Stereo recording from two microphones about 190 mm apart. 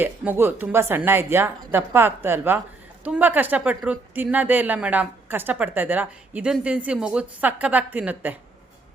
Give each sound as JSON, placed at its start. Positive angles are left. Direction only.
{"t": 0.0, "sound": "a woman's voice", "side_deg": -10}